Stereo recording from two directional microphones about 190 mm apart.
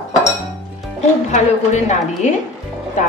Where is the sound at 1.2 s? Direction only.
40° left (ahead or behind).